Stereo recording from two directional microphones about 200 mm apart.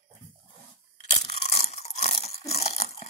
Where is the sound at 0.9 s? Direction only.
30° left (ahead or behind).